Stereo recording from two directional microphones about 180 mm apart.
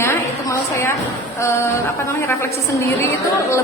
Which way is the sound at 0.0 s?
15° left (ahead or behind).